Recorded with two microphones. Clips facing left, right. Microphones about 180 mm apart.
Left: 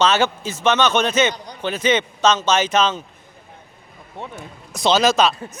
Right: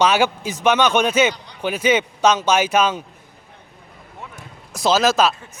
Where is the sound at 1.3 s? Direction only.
45° left (ahead or behind).